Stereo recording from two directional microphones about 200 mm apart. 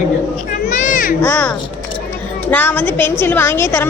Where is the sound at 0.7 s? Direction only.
40° left (ahead or behind).